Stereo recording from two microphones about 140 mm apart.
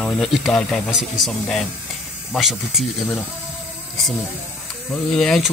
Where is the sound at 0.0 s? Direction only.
5° left (ahead or behind).